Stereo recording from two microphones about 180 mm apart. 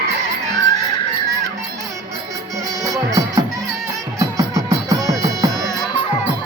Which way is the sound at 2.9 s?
20° right (ahead or behind).